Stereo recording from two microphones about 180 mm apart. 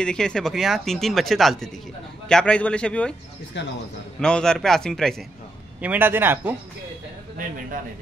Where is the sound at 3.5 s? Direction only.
80° left.